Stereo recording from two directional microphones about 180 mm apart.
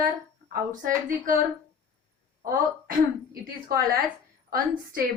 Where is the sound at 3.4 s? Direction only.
55° right (ahead or behind).